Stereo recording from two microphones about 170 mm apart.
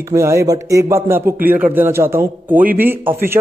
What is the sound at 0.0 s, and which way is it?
A man's voice, 15° right (ahead or behind).